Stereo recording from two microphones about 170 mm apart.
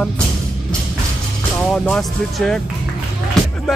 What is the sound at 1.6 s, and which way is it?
Speech, 5° left (ahead or behind).